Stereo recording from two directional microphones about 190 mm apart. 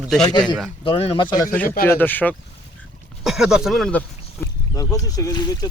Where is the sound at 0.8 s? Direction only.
30° left (ahead or behind).